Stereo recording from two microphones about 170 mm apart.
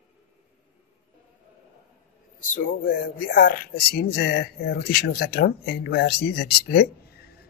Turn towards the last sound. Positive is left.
turn(degrees=65)  # may be behind; listen again after turning